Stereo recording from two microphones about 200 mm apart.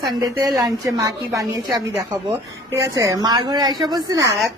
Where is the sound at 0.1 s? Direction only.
20° right (ahead or behind).